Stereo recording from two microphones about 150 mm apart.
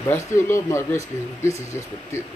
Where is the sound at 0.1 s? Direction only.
20° left (ahead or behind).